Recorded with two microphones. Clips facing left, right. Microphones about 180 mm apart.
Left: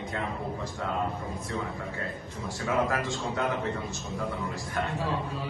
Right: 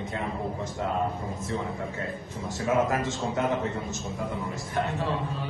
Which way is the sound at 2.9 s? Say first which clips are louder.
Right 2 dB; 20° right (ahead or behind).